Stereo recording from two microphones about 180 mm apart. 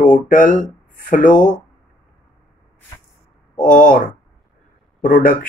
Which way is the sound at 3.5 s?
45° left (ahead or behind).